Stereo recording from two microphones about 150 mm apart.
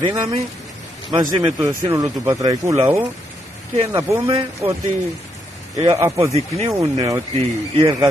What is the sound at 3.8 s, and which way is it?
Speech, 20° right (ahead or behind).